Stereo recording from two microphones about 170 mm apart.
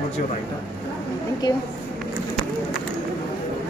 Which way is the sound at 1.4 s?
25° left (ahead or behind).